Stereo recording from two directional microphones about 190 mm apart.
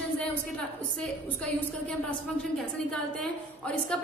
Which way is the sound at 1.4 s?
5° left (ahead or behind).